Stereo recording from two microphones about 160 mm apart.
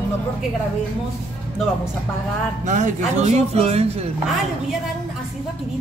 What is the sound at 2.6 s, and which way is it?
Chopping, 50° right (ahead or behind).